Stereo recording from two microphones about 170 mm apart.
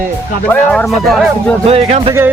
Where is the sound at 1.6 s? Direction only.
35° right (ahead or behind).